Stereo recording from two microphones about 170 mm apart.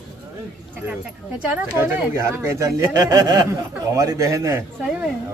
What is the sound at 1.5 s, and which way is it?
Speech, 15° right (ahead or behind).